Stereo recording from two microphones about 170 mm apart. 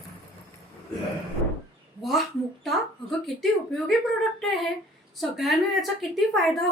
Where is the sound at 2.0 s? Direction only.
Centre (ahead or behind).